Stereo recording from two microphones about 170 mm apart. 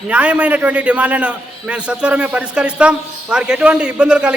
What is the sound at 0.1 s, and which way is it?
A man's voice, 5° right (ahead or behind).